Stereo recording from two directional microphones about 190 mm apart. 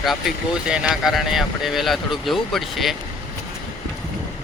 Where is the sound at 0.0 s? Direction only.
Centre (ahead or behind).